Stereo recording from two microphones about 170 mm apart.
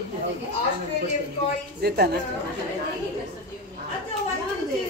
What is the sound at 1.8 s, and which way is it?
Speech, 70° right (ahead or behind).